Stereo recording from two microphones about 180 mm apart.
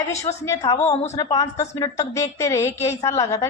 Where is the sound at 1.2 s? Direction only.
20° left (ahead or behind).